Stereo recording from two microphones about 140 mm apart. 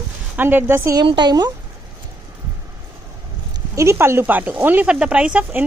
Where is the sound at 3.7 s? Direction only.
20° right (ahead or behind).